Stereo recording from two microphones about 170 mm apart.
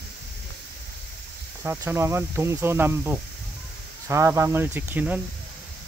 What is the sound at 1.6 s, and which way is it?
Speech, 15° right (ahead or behind).